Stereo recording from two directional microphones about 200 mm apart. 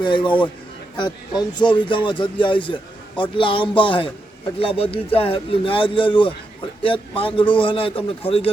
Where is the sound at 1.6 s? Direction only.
25° left (ahead or behind).